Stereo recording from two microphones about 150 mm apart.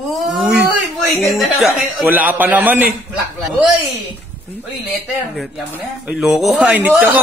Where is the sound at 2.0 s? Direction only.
10° right (ahead or behind).